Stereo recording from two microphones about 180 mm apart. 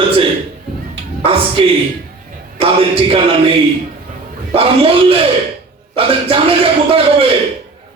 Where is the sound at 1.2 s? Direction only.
30° right (ahead or behind).